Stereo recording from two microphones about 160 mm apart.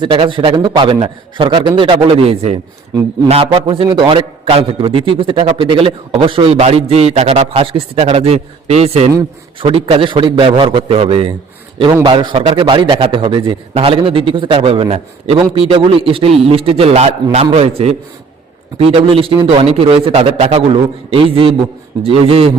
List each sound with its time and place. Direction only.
0.0 s a man's voice: 30° right (ahead or behind)